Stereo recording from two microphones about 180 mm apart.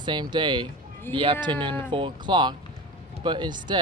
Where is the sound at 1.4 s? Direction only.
25° right (ahead or behind).